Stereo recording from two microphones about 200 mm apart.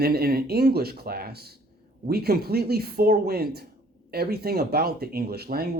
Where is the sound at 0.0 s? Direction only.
50° right (ahead or behind).